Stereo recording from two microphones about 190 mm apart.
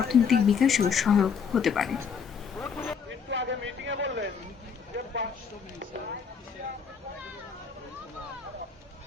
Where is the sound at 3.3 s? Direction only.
70° right (ahead or behind).